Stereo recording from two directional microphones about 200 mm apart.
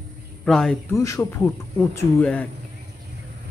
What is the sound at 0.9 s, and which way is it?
Speech, 15° left (ahead or behind).